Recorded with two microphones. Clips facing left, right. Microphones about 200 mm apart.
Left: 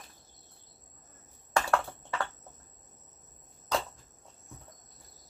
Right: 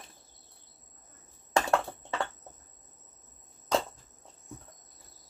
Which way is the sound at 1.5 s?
20° right (ahead or behind).